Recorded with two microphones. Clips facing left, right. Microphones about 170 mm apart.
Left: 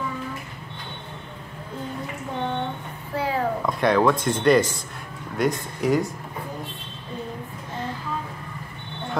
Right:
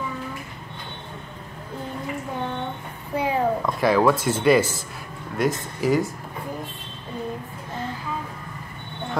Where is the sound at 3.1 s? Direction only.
20° right (ahead or behind).